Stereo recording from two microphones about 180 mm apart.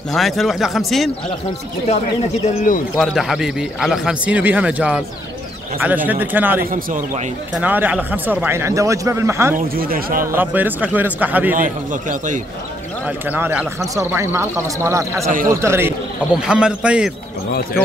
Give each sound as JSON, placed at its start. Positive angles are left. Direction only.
{"t": 0.1, "sound": "a man's voice", "side_deg": 0}
{"t": 2.4, "sound": "speech", "side_deg": 50}
{"t": 3.0, "sound": "a man's voice", "side_deg": 0}
{"t": 6.6, "sound": "a man's voice", "side_deg": -50}
{"t": 7.5, "sound": "speech", "side_deg": -10}
{"t": 9.8, "sound": "a man's voice", "side_deg": -55}
{"t": 10.2, "sound": "speech", "side_deg": -10}
{"t": 11.5, "sound": "a man's voice", "side_deg": -45}
{"t": 13.0, "sound": "speech", "side_deg": -10}
{"t": 15.2, "sound": "a man's voice", "side_deg": -50}
{"t": 15.6, "sound": "a man's voice", "side_deg": -15}